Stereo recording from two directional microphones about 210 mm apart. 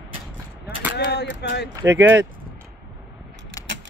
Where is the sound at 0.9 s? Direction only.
55° left (ahead or behind).